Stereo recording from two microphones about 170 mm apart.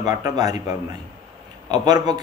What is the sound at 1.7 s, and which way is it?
Speech, 25° right (ahead or behind).